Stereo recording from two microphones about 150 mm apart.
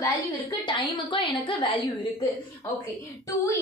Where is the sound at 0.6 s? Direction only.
30° left (ahead or behind).